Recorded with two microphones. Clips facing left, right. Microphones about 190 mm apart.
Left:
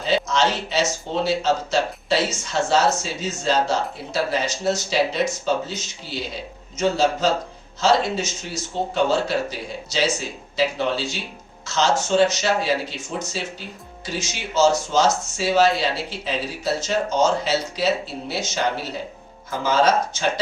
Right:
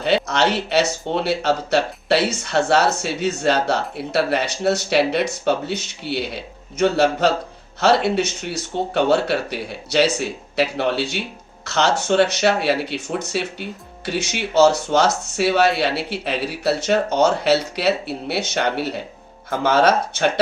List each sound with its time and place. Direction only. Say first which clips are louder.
0.0 s speech: right 2 dB; 65° right (ahead or behind)